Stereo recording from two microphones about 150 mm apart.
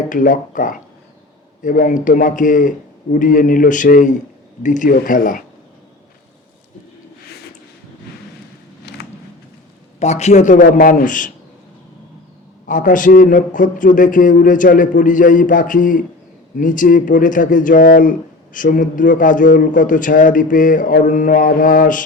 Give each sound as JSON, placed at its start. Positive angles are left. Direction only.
{"t": 0.1, "sound": "a man's voice", "side_deg": 60}
{"t": 8.9, "sound": "a sound", "side_deg": 90}
{"t": 10.0, "sound": "a man's voice", "side_deg": 50}
{"t": 12.6, "sound": "a man's voice", "side_deg": 60}